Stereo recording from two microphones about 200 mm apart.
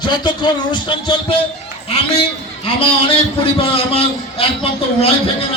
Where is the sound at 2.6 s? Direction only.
25° left (ahead or behind).